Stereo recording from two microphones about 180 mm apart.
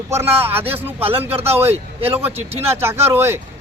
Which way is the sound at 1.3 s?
35° right (ahead or behind).